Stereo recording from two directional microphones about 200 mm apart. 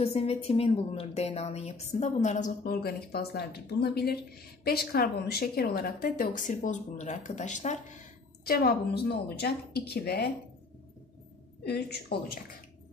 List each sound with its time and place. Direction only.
0.0 s a woman's voice: 30° left (ahead or behind)
8.5 s a woman's voice: 50° left (ahead or behind)
11.6 s a woman's voice: 55° left (ahead or behind)